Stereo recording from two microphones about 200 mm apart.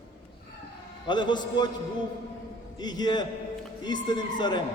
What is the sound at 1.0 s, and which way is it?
Speech, 20° left (ahead or behind).